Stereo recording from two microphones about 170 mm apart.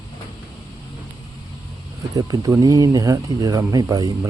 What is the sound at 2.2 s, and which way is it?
Speech, 20° right (ahead or behind).